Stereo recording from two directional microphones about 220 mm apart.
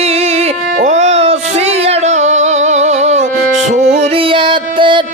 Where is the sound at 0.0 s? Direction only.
30° right (ahead or behind).